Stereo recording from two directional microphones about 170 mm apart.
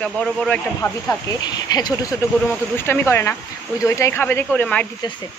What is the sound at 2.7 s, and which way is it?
A man's voice, 10° left (ahead or behind).